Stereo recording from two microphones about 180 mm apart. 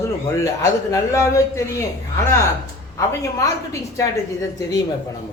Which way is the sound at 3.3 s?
15° left (ahead or behind).